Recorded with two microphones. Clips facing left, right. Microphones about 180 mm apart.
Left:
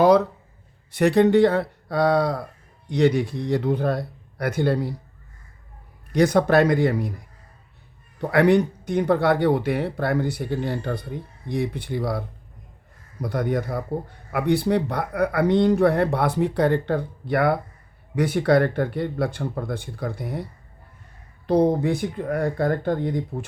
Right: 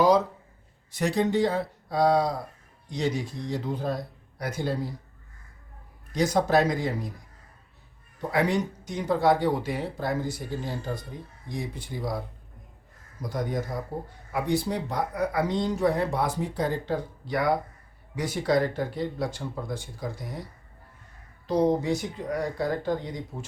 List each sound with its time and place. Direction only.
0.9 s speech: 65° left (ahead or behind)
6.1 s speech: 65° left (ahead or behind)
13.2 s speech: 65° left (ahead or behind)